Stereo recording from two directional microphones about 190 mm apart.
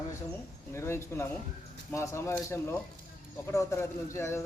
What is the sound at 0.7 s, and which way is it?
A man's voice, 15° left (ahead or behind).